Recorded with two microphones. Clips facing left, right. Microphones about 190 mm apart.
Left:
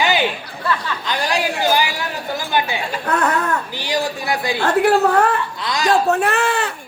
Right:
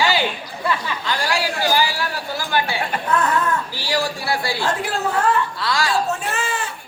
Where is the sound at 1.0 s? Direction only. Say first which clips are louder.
Left 2 dB; 20° left (ahead or behind).